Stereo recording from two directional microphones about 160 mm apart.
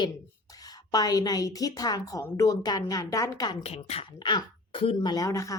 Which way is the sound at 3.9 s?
35° left (ahead or behind).